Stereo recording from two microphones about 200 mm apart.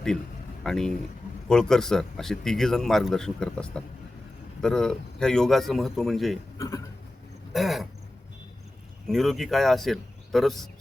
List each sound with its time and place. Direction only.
0.6 s speech: centre (ahead or behind)
6.6 s speech: 15° left (ahead or behind)
7.5 s speech: centre (ahead or behind)
9.0 s speech: centre (ahead or behind)